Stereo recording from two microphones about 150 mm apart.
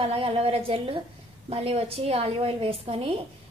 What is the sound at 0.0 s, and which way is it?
A woman's voice, 40° right (ahead or behind).